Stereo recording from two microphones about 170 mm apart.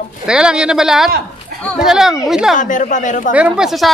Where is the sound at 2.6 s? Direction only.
50° left (ahead or behind).